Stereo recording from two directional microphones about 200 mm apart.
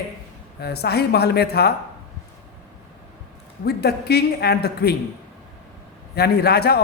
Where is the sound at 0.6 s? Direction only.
55° left (ahead or behind).